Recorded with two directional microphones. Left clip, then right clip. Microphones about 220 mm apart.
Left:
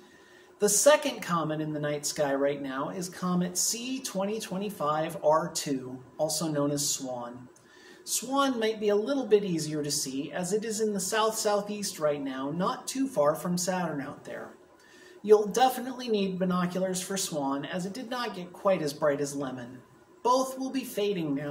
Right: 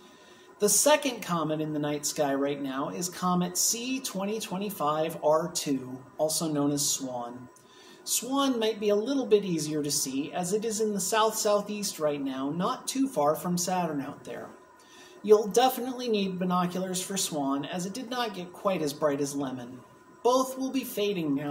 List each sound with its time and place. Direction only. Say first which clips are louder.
0.6 s speech: left 1 dB; 5° right (ahead or behind)